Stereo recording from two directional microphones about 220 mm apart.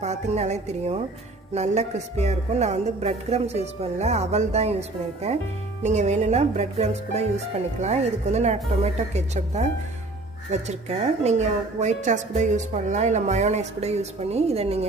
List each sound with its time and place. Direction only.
0.0 s a woman's voice: 30° right (ahead or behind)